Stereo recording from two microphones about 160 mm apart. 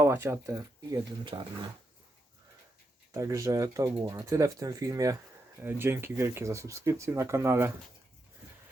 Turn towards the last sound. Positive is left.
turn(degrees=-15)  # may be behind; listen again after turning